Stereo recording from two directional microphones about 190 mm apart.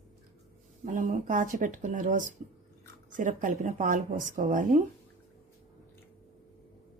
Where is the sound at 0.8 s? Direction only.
45° right (ahead or behind).